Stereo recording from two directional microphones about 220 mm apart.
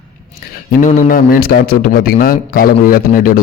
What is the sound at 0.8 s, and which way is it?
A man's voice, 40° left (ahead or behind).